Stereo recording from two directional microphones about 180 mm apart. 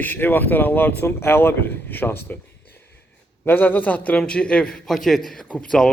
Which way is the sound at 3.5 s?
10° left (ahead or behind).